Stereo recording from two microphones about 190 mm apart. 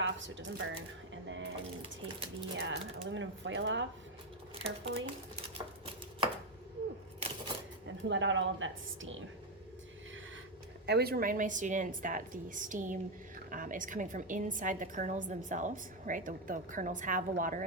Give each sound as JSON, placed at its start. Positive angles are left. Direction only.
{"t": 0.0, "sound": "speech", "side_deg": -80}
{"t": 2.6, "sound": "speech", "side_deg": -75}
{"t": 4.6, "sound": "chopping", "side_deg": -30}
{"t": 8.0, "sound": "a woman's voice", "side_deg": -75}
{"t": 10.8, "sound": "a woman's voice", "side_deg": -55}